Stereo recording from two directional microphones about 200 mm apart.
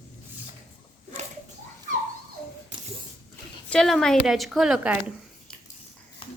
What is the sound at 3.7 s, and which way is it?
A woman's voice, centre (ahead or behind).